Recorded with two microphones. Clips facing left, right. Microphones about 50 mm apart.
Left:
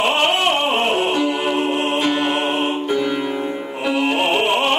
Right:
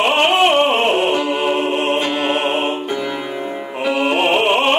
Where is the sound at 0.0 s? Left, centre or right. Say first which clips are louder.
Right 3 dB; right.